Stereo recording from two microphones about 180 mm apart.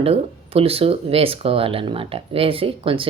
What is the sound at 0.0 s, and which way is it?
A woman's voice, 30° right (ahead or behind).